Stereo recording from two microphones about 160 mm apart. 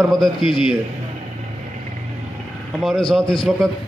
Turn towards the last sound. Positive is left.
turn(degrees=5)  # may be behind; listen again after turning